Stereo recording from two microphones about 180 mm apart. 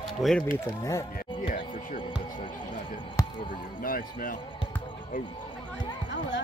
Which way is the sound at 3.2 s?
20° left (ahead or behind).